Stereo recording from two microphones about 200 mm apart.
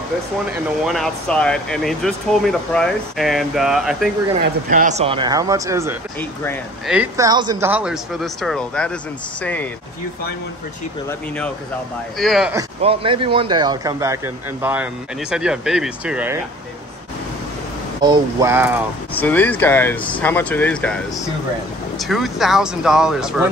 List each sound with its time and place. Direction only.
0.5 s speech: centre (ahead or behind)
4.6 s speech: 40° right (ahead or behind); by 5.9 s 15° right (ahead or behind)
7.2 s speech: 20° right (ahead or behind)
7.7 s speech: 5° right (ahead or behind)
11.1 s speech: 5° left (ahead or behind)
12.8 s speech: 25° right (ahead or behind); by 16.3 s 5° right (ahead or behind)
18.0 s speech: 20° right (ahead or behind)
19.1 s speech: 10° left (ahead or behind)
22.0 s speech: centre (ahead or behind)